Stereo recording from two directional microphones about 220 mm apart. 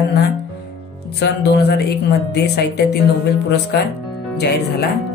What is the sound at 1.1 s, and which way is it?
A woman's voice, 45° left (ahead or behind).